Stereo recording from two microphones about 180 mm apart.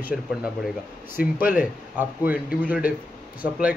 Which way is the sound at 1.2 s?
55° left (ahead or behind).